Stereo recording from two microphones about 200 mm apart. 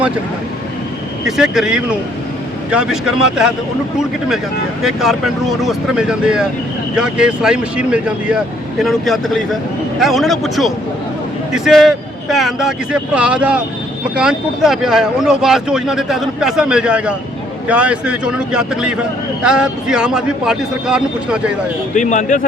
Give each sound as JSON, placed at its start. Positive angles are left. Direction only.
{"t": 1.2, "sound": "speech", "side_deg": 0}
{"t": 4.8, "sound": "speech", "side_deg": 0}
{"t": 21.9, "sound": "speech", "side_deg": 35}